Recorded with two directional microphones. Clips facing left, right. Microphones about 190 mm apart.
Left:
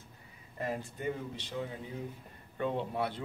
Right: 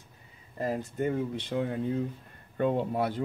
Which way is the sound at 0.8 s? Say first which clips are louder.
Right 7 dB; 50° right (ahead or behind).